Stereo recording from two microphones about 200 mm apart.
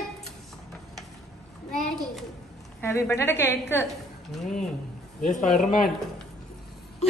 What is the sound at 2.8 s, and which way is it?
A woman's voice, 15° left (ahead or behind).